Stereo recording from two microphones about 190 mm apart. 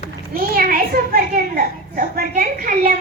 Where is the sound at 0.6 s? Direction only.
50° right (ahead or behind).